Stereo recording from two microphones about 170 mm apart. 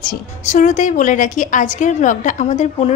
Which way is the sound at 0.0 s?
45° left (ahead or behind).